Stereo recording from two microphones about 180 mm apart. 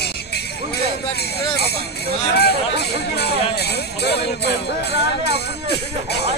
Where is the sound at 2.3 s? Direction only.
65° left (ahead or behind).